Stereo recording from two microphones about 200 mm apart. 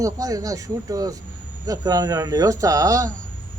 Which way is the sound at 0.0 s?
15° right (ahead or behind).